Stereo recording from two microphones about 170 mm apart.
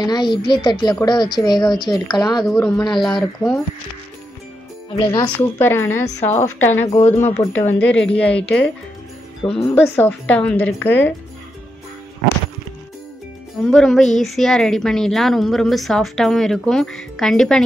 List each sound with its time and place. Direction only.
0.0 s a woman's voice: 25° left (ahead or behind)
2.4 s a woman's voice: centre (ahead or behind)
4.9 s a woman's voice: 25° left (ahead or behind)
5.6 s a woman's voice: 15° left (ahead or behind)
9.4 s speech: 35° left (ahead or behind)
9.8 s a woman's voice: 10° left (ahead or behind)
13.7 s a woman's voice: centre (ahead or behind)